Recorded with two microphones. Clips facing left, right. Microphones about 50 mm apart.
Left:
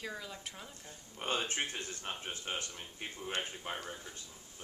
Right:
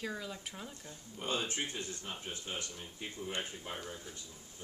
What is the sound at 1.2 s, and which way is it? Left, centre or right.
Speech, left.